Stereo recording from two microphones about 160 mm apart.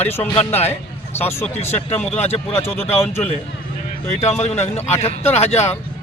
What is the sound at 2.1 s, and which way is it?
Speech, 40° left (ahead or behind).